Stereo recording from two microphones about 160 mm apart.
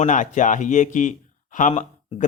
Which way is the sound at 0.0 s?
50° left (ahead or behind).